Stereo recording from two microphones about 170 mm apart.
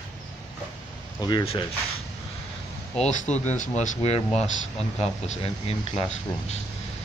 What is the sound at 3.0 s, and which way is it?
Speech, 45° left (ahead or behind).